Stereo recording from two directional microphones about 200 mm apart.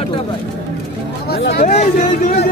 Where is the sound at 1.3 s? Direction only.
60° left (ahead or behind).